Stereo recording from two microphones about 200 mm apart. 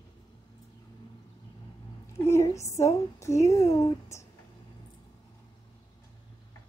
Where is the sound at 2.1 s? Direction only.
15° left (ahead or behind).